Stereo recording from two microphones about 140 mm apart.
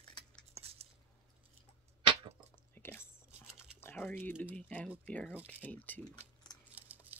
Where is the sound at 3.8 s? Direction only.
15° left (ahead or behind).